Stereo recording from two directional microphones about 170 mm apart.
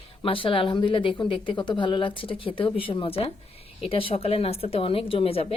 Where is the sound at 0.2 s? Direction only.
30° left (ahead or behind).